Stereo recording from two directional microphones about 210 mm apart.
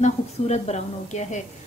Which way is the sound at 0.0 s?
35° left (ahead or behind).